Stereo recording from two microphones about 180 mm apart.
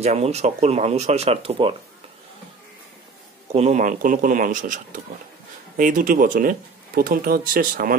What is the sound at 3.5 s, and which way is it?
Speech, 40° right (ahead or behind).